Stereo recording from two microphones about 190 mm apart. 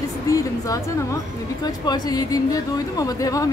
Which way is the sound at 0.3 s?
15° left (ahead or behind).